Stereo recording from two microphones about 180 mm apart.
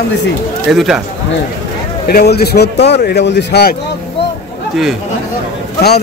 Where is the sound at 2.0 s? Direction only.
60° left (ahead or behind).